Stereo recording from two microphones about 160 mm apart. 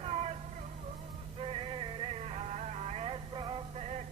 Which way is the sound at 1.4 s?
35° right (ahead or behind).